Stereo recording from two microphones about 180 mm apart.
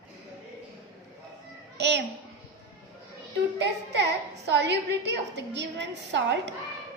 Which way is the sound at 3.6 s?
75° right (ahead or behind).